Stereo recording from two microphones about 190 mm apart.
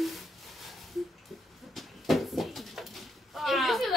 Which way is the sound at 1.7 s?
Centre (ahead or behind).